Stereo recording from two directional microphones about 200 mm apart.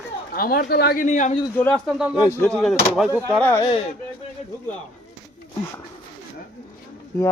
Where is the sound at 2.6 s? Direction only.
Centre (ahead or behind).